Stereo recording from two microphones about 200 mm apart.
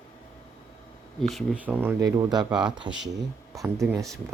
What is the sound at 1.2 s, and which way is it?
A man's voice, centre (ahead or behind).